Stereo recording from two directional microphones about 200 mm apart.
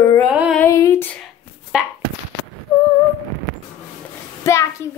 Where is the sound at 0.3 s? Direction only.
5° right (ahead or behind).